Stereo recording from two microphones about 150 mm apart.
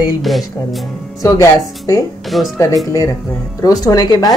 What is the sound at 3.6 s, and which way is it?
Speech, 25° left (ahead or behind).